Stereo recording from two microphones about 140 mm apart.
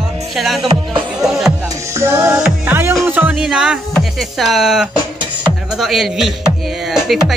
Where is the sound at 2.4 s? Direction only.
5° right (ahead or behind).